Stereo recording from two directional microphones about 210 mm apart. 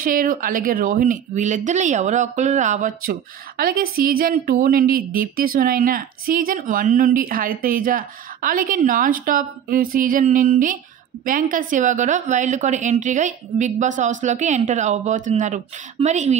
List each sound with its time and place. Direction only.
0.0 s speech: 40° right (ahead or behind)